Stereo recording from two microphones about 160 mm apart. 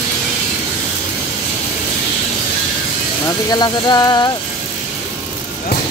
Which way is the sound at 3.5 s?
25° left (ahead or behind).